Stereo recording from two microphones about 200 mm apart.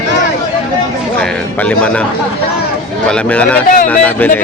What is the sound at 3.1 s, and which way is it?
Speech, 5° left (ahead or behind).